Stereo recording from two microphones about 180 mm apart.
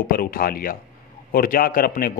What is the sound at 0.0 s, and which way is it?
Speech, 50° left (ahead or behind).